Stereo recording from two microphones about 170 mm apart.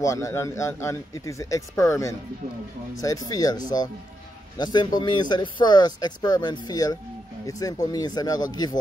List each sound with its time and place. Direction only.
0.0 s speech: 20° left (ahead or behind)
4.7 s speech: 25° left (ahead or behind)